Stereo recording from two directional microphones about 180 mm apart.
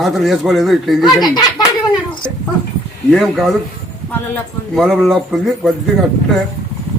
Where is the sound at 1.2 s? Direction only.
20° left (ahead or behind).